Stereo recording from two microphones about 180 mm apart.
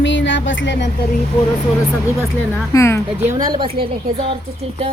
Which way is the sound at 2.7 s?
15° left (ahead or behind).